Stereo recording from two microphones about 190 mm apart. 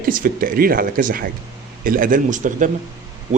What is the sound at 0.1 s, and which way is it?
Speech, 45° right (ahead or behind).